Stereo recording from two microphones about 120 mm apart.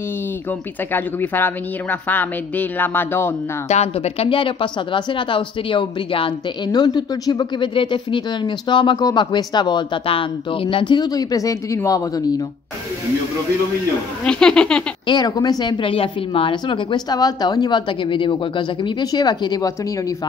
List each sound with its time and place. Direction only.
0.5 s speech: 15° left (ahead or behind)
3.6 s speech: 65° left (ahead or behind); by 12.1 s 25° left (ahead or behind)
14.2 s speech: 5° left (ahead or behind)
15.0 s speech: 35° left (ahead or behind)